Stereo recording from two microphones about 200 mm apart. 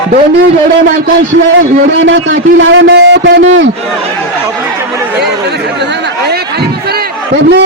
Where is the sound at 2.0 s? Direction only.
70° right (ahead or behind).